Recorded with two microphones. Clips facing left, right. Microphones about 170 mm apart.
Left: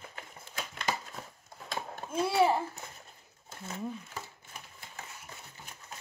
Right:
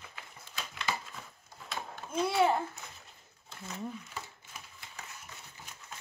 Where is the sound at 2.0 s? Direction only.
35° left (ahead or behind).